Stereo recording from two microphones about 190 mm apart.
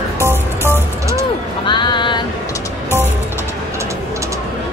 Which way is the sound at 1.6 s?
25° left (ahead or behind).